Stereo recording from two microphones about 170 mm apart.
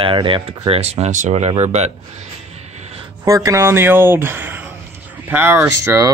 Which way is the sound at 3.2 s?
20° right (ahead or behind).